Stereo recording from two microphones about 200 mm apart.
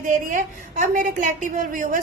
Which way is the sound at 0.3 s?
40° right (ahead or behind).